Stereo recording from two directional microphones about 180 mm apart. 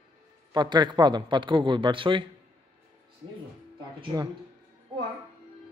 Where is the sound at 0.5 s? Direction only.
25° right (ahead or behind).